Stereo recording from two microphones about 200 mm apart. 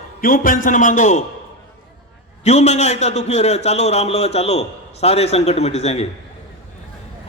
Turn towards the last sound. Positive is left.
turn(degrees=30)  # may be behind; listen again after turning